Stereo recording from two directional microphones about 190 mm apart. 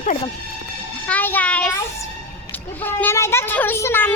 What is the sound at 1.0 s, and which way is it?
A child's voice, 10° left (ahead or behind).